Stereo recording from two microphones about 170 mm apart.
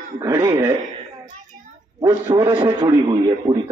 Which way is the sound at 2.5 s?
30° right (ahead or behind).